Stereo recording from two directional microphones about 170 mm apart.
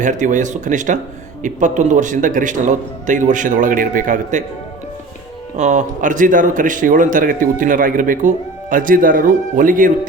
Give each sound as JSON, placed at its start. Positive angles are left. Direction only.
{"t": 0.0, "sound": "a man's voice", "side_deg": -45}
{"t": 5.5, "sound": "a man's voice", "side_deg": -45}